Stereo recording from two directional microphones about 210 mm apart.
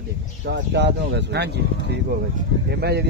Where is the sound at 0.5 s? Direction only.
55° right (ahead or behind).